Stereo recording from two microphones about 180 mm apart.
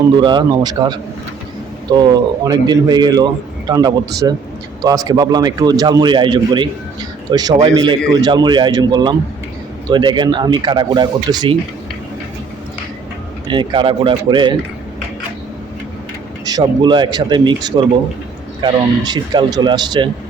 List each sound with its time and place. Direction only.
0.2 s speech: 25° right (ahead or behind)
13.5 s speech: 25° right (ahead or behind)
16.5 s speech: 25° right (ahead or behind)